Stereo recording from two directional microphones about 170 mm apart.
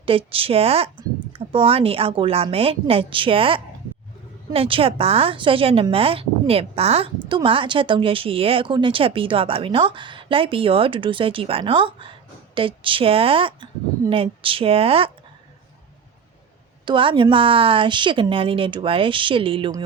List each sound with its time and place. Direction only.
0.0 s a woman's voice: 35° right (ahead or behind)
16.8 s a woman's voice: 30° right (ahead or behind)